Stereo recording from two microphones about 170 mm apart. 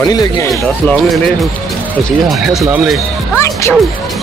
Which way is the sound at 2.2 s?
Centre (ahead or behind).